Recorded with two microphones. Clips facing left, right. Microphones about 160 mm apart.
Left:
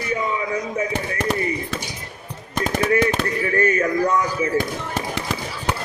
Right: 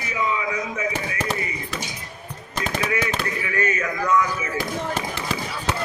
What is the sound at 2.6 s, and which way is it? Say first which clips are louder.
Machine gun: left 6 dB; 45° left (ahead or behind).